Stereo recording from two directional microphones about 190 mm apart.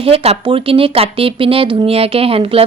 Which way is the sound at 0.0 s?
30° right (ahead or behind).